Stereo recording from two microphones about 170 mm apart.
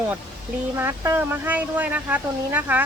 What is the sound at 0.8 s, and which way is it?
Speech, 15° right (ahead or behind).